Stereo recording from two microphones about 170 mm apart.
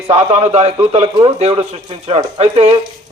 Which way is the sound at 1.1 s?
35° right (ahead or behind).